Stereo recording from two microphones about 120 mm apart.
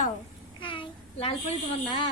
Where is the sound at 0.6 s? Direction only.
45° left (ahead or behind).